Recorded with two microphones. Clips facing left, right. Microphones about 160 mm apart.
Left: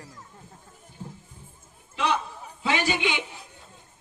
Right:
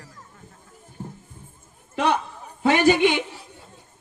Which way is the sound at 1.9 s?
50° right (ahead or behind).